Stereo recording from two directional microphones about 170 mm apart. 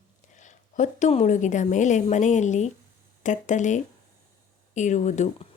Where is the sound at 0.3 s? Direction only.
45° left (ahead or behind).